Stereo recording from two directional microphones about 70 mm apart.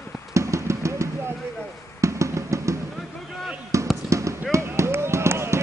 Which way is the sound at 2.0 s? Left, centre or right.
Right.